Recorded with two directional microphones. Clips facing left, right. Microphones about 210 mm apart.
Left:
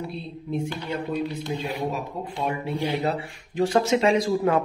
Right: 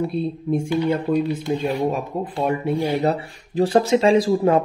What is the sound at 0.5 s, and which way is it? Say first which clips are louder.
Speech: right 8 dB; 50° right (ahead or behind).